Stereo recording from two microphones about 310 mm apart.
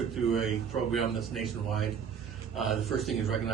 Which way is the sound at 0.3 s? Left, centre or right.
Centre.